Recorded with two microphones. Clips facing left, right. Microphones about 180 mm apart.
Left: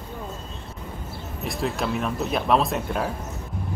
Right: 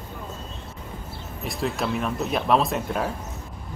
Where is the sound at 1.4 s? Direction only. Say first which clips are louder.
Even; centre (ahead or behind).